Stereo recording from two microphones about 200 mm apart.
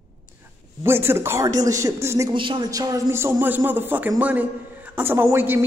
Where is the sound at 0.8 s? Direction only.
10° right (ahead or behind).